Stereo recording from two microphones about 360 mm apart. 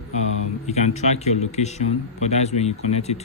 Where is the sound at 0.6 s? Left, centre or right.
Centre.